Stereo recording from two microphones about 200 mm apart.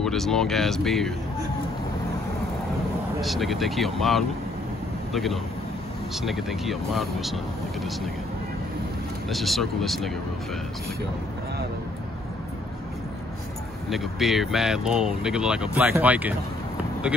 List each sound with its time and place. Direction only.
0.0 s speech: centre (ahead or behind)
3.2 s speech: centre (ahead or behind)
9.3 s speech: centre (ahead or behind)
13.8 s speech: centre (ahead or behind)